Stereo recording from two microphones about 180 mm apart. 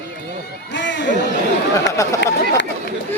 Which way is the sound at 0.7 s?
80° left.